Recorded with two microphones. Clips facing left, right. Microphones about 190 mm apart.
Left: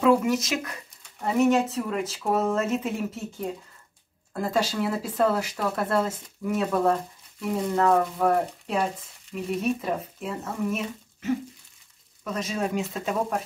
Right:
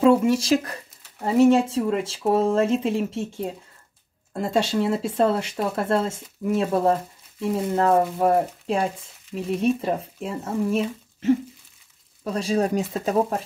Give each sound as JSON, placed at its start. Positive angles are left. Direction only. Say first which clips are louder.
{"t": 0.0, "sound": "speech", "louder": "right 4 dB", "side_deg": -30}